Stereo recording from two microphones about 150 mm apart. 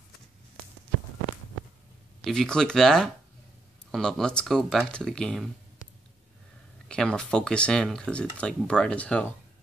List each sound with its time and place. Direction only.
2.2 s speech: 5° left (ahead or behind)
6.9 s speech: 5° left (ahead or behind)